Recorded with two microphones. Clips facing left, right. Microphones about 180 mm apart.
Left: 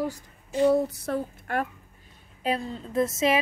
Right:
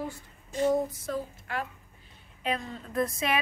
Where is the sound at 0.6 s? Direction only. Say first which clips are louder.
Left 4 dB; 70° left (ahead or behind).